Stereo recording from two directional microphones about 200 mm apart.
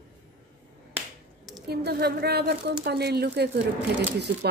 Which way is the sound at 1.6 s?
55° right (ahead or behind).